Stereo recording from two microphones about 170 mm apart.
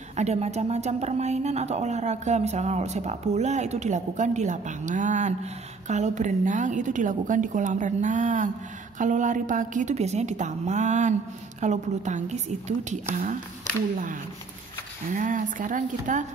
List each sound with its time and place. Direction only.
0.1 s speech: 40° right (ahead or behind)
15.1 s speech: 50° right (ahead or behind)